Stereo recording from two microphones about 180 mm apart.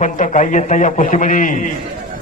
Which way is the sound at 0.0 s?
45° left (ahead or behind).